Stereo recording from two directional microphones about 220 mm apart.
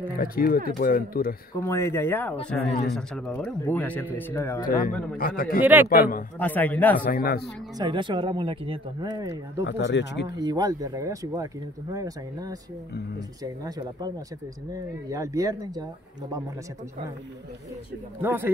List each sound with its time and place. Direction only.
0.2 s speech: 40° left (ahead or behind)
1.5 s speech: 15° left (ahead or behind)
5.1 s speech: 40° left (ahead or behind)
5.6 s speech: 10° right (ahead or behind)
5.9 s speech: 40° left (ahead or behind)
6.4 s speech: 5° left (ahead or behind)
7.0 s speech: 40° left (ahead or behind)
7.8 s speech: 20° right (ahead or behind)
9.7 s speech: 55° left (ahead or behind)
10.2 s speech: 20° right (ahead or behind)
18.2 s speech: 10° right (ahead or behind)